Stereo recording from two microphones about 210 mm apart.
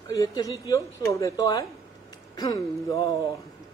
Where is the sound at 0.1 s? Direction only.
15° left (ahead or behind).